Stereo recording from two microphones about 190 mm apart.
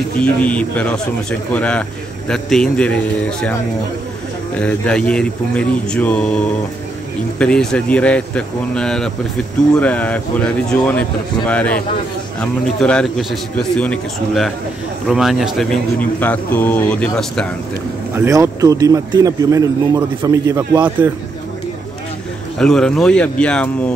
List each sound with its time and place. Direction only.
0.2 s a man's voice: 5° left (ahead or behind)
4.6 s a man's voice: 5° left (ahead or behind)
18.1 s a man's voice: 15° right (ahead or behind)
22.6 s a man's voice: 5° left (ahead or behind)